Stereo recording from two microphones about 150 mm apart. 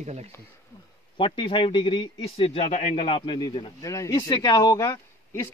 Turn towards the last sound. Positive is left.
turn(degrees=20)  # may be behind; listen again after turning